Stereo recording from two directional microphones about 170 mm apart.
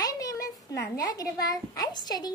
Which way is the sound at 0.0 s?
20° left (ahead or behind).